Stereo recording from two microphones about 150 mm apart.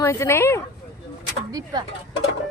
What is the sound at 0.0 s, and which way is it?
Speech, 20° left (ahead or behind).